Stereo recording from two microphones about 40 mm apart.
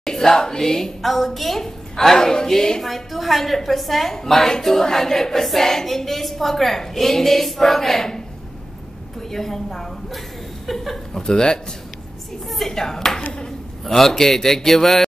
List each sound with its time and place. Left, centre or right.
0.0 s a woman's voice: centre
9.3 s a woman's voice: centre
11.2 s a woman's voice: centre